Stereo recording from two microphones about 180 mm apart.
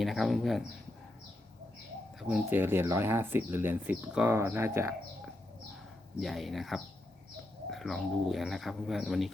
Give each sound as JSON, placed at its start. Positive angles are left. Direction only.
{"t": 0.0, "sound": "speech", "side_deg": 0}
{"t": 2.2, "sound": "speech", "side_deg": -10}
{"t": 6.1, "sound": "speech", "side_deg": 0}